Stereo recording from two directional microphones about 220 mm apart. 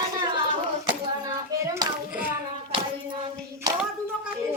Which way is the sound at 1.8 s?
10° right (ahead or behind).